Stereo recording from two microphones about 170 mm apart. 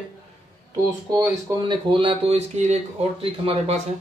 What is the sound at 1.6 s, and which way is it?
A man's voice, 30° right (ahead or behind).